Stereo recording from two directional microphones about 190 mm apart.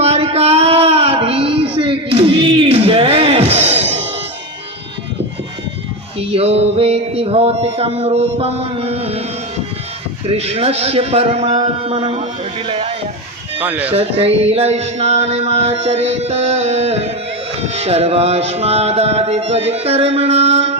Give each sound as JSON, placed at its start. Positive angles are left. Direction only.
{"t": 0.0, "sound": "a sound", "side_deg": -30}
{"t": 6.1, "sound": "music", "side_deg": -30}
{"t": 10.2, "sound": "music", "side_deg": -35}
{"t": 13.6, "sound": "speech", "side_deg": -10}
{"t": 13.9, "sound": "music", "side_deg": -30}